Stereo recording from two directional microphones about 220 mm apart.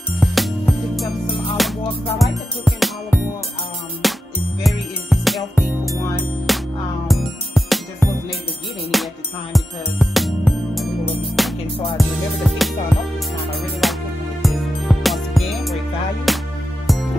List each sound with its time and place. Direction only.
0.2 s music: centre (ahead or behind)
13.8 s music: centre (ahead or behind)